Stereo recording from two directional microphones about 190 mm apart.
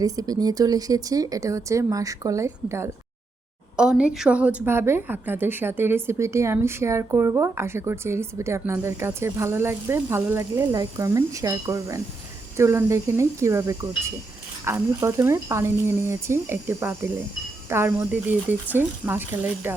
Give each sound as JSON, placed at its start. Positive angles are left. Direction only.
{"t": 0.0, "sound": "a woman's voice", "side_deg": -20}